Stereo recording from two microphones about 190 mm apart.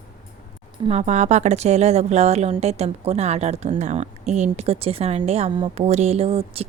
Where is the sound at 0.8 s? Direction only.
35° right (ahead or behind).